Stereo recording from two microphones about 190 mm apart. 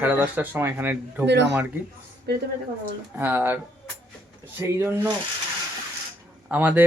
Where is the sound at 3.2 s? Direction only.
10° right (ahead or behind).